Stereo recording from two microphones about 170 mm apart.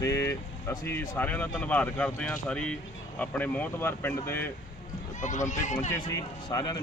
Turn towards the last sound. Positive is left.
turn(degrees=20)  # may be behind; listen again after turning